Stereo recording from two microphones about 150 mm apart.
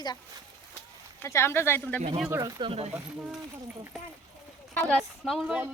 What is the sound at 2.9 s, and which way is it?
Speech, 10° right (ahead or behind).